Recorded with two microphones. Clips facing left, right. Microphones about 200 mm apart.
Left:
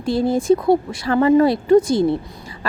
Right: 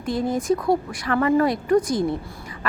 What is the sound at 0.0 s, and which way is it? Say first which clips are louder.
Speech: left 5 dB; 30° left (ahead or behind).